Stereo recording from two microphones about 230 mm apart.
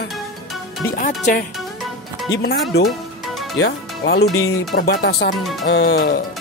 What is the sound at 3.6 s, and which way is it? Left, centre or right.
Speech, left.